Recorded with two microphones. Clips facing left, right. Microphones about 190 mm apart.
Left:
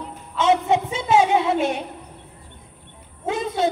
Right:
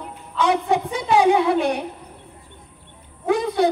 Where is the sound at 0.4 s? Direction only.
25° left (ahead or behind).